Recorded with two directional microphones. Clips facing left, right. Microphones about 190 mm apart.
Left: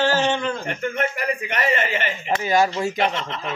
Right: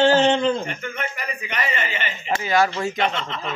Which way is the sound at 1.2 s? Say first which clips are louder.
Left 4 dB; 60° left (ahead or behind).